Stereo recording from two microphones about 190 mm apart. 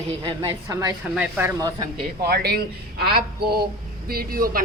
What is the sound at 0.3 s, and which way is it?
A woman's voice, 20° right (ahead or behind).